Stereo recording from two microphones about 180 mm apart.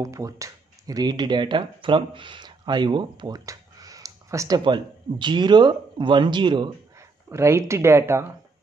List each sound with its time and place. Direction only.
0.0 s speech: 20° right (ahead or behind)
7.2 s speech: 15° right (ahead or behind)